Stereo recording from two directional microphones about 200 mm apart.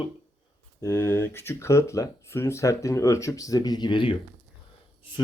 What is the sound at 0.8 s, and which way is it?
Speech, 10° left (ahead or behind).